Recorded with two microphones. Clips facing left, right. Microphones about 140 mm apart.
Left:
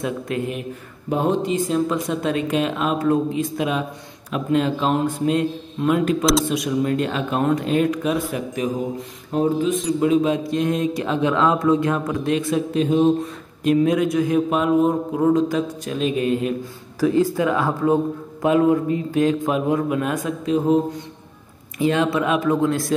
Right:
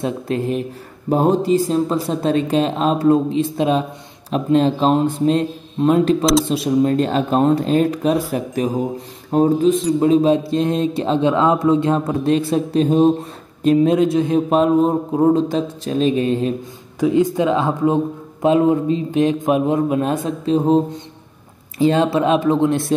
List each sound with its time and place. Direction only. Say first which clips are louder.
0.0 s speech: right 3 dB; 35° right (ahead or behind)
9.3 s speech: right 5 dB; 35° right (ahead or behind)
17.0 s speech: right 2 dB; 20° right (ahead or behind)